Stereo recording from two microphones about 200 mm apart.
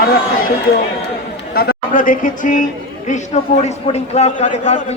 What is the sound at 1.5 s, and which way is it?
A man's voice, 45° left (ahead or behind).